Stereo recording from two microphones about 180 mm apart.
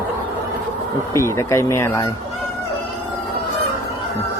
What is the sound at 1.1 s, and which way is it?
Speech, 15° left (ahead or behind).